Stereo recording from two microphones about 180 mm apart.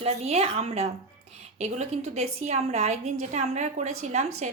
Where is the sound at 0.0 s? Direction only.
35° right (ahead or behind).